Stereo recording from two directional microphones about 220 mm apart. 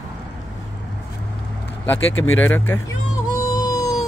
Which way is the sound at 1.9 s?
65° left (ahead or behind).